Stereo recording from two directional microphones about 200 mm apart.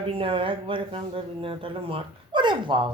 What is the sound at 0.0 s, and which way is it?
Speech, 25° right (ahead or behind).